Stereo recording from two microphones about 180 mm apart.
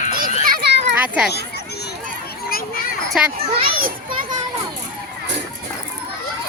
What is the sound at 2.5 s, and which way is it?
Children playing, 55° left (ahead or behind).